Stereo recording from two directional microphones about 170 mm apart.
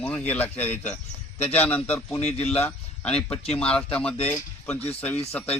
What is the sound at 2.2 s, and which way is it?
A man's voice, 40° left (ahead or behind).